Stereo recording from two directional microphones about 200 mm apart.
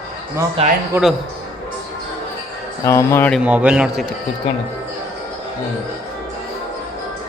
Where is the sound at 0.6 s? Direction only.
30° right (ahead or behind).